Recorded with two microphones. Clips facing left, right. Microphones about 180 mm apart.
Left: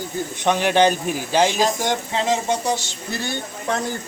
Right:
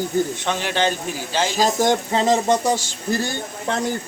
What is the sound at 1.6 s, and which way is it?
Speech, 40° right (ahead or behind).